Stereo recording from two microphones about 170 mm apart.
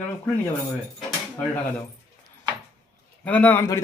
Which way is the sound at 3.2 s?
10° left (ahead or behind).